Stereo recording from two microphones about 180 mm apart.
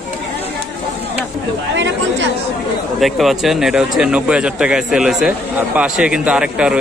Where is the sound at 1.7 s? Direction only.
90° right.